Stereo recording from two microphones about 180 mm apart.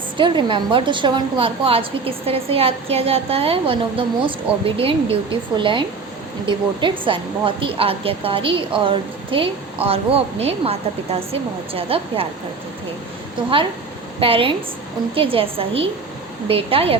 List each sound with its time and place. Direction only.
0.2 s a woman's voice: 25° right (ahead or behind)
14.2 s speech: 30° right (ahead or behind)